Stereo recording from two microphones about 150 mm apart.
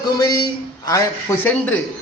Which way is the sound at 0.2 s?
25° left (ahead or behind).